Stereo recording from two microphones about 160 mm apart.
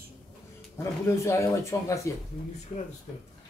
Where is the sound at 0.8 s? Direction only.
20° left (ahead or behind).